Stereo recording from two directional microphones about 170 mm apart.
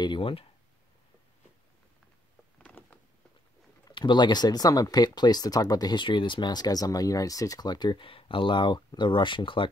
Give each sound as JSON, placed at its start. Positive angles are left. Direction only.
{"t": 0.0, "sound": "speech", "side_deg": 30}
{"t": 2.6, "sound": "a sound", "side_deg": 5}
{"t": 3.8, "sound": "speech", "side_deg": 25}